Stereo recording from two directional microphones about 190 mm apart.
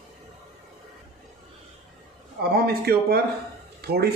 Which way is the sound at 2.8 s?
55° right (ahead or behind).